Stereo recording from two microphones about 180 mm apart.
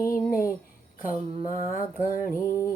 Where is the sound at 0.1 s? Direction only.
50° left (ahead or behind).